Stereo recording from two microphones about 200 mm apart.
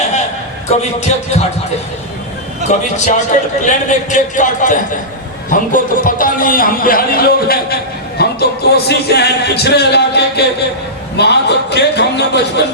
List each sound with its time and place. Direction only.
0.7 s a man's voice: 35° left (ahead or behind)
2.6 s a man's voice: 35° left (ahead or behind)
8.2 s music: 55° left (ahead or behind)